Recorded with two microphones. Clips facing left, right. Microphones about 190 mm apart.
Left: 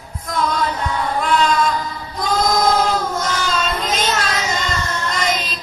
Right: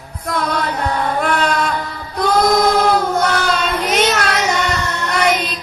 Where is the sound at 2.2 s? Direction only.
65° right (ahead or behind).